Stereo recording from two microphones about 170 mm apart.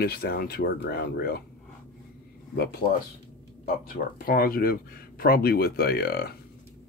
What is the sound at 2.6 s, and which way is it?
Speech, 65° left (ahead or behind).